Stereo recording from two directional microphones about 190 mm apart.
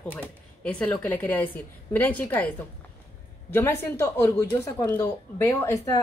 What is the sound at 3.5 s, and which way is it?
Speech, 10° left (ahead or behind).